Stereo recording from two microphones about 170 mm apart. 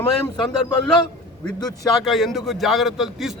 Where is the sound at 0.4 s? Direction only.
25° left (ahead or behind).